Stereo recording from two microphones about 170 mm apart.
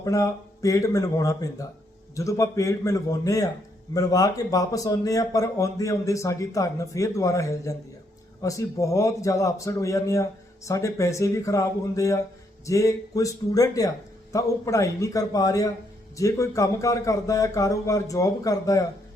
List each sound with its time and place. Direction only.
0.0 s speech: 20° left (ahead or behind)